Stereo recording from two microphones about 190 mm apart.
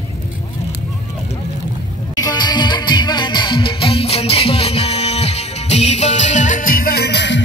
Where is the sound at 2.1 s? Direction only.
20° left (ahead or behind).